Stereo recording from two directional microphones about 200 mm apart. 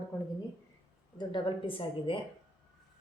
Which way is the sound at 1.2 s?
25° left (ahead or behind).